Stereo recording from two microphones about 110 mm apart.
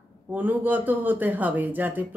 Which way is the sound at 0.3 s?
15° right (ahead or behind).